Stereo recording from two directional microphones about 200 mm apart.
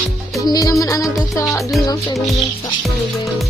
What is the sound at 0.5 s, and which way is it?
Music, 20° left (ahead or behind).